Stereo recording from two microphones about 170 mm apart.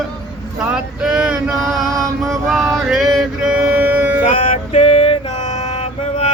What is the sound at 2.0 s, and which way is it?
Music, centre (ahead or behind).